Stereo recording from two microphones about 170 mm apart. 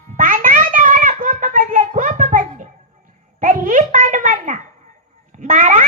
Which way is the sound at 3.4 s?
50° right (ahead or behind).